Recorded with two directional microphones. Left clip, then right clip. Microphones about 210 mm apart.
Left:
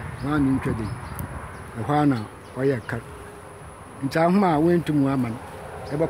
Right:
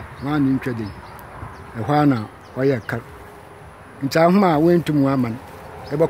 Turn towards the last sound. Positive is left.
turn(degrees=-50)  # may be behind; listen again after turning